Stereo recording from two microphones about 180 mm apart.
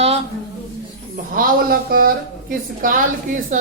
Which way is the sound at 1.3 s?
50° right (ahead or behind).